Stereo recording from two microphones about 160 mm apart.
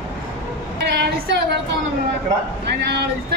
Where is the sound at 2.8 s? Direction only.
90° right.